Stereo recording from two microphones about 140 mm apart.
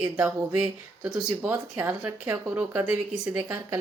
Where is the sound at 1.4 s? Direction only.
15° right (ahead or behind).